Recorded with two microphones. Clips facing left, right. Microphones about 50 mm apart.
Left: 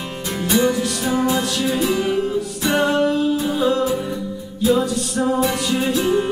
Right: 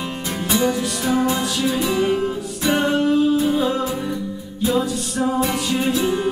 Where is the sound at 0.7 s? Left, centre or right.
Centre.